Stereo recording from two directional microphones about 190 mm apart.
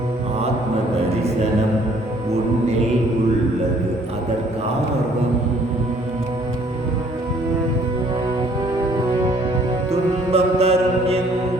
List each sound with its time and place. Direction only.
9.9 s music: 30° right (ahead or behind)